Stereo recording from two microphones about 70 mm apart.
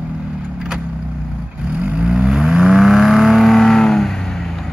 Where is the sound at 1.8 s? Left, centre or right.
Centre.